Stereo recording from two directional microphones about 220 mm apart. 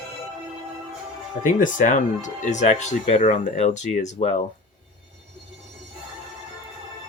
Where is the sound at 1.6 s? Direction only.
35° left (ahead or behind).